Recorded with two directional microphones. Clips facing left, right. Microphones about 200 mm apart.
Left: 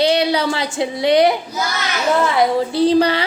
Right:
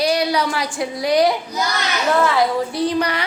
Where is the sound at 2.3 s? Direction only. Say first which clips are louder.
Left 3 dB; 30° left (ahead or behind).